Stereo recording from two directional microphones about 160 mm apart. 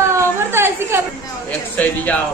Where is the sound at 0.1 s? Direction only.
15° right (ahead or behind).